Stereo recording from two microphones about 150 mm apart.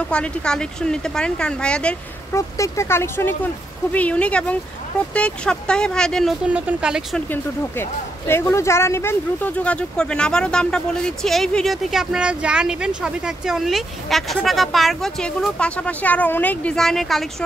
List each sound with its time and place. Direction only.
0.1 s speech: 5° left (ahead or behind)
2.3 s speech: 20° left (ahead or behind); by 6.3 s 5° left (ahead or behind)
6.4 s speech: 10° right (ahead or behind)
7.2 s speech: 15° left (ahead or behind)